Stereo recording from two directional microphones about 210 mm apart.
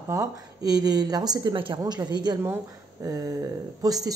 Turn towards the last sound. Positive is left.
turn(degrees=-15)  # may be behind; listen again after turning